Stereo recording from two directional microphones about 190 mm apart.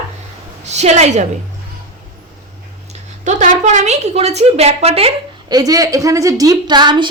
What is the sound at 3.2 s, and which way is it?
A woman's voice, 40° right (ahead or behind).